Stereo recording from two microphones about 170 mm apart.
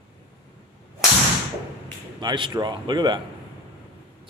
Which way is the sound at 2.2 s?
25° right (ahead or behind).